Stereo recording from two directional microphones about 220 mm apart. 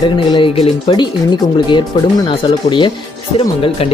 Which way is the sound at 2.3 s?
20° left (ahead or behind).